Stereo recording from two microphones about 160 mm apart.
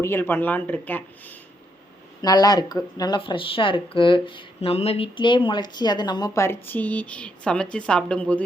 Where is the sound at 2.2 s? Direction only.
25° left (ahead or behind).